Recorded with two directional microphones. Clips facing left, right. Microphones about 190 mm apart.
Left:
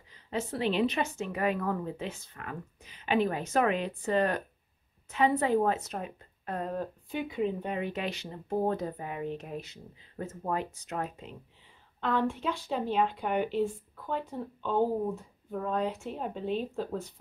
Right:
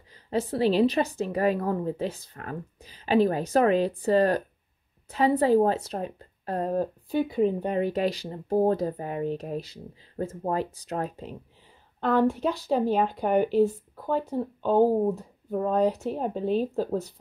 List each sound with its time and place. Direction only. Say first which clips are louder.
0.1 s a woman's voice: right 6 dB; 35° right (ahead or behind)